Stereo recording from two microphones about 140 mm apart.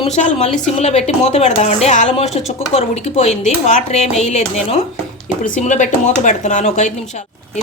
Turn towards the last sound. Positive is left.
turn(degrees=55)  # may be behind; listen again after turning